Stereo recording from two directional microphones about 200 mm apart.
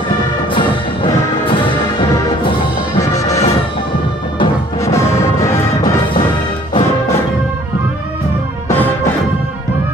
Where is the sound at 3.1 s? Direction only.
15° left (ahead or behind).